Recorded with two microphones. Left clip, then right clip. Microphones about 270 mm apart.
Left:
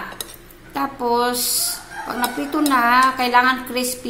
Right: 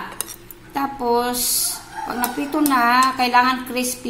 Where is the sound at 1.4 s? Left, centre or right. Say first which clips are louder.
Even; right.